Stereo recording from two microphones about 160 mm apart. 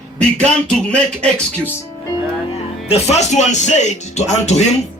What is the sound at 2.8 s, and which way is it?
A man's voice, 40° left (ahead or behind).